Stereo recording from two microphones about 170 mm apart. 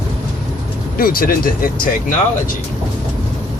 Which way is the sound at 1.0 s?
55° left (ahead or behind).